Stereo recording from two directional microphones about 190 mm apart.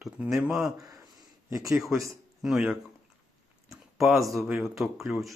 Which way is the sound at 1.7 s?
Centre (ahead or behind).